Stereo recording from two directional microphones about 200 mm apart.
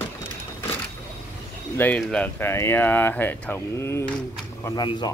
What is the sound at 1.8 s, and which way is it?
Speech, 5° left (ahead or behind).